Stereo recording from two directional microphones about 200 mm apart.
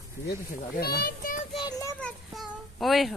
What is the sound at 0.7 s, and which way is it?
Speech, 50° left (ahead or behind).